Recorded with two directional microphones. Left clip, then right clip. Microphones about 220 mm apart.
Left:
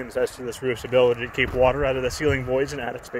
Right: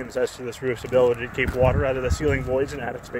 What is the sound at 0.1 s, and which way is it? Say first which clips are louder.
Speech: even; 10° left (ahead or behind).